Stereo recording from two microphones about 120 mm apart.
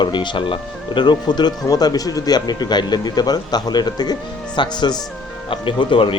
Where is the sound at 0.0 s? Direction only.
40° left (ahead or behind).